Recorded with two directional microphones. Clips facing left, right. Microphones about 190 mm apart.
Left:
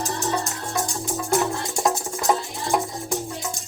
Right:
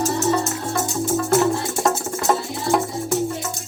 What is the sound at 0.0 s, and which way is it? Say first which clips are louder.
Music: right 6 dB; 5° right (ahead or behind).